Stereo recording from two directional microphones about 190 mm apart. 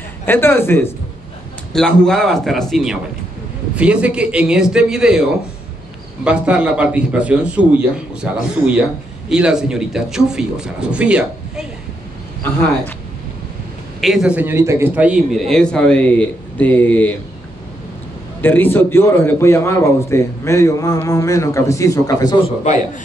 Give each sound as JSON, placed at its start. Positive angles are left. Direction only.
{"t": 0.2, "sound": "a man's voice", "side_deg": 10}
{"t": 6.2, "sound": "a man's voice", "side_deg": -5}
{"t": 14.0, "sound": "a man's voice", "side_deg": -5}
{"t": 18.4, "sound": "a man's voice", "side_deg": 10}